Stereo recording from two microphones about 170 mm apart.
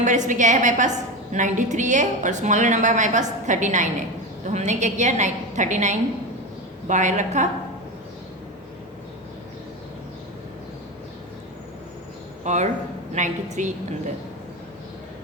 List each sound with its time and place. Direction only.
0.0 s a woman's voice: 45° right (ahead or behind)
12.5 s a woman's voice: 45° right (ahead or behind)